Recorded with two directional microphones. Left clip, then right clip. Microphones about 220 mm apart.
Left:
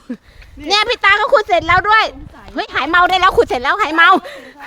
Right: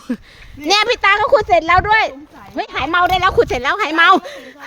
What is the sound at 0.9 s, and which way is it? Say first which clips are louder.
Speech: left 3 dB; 10° right (ahead or behind).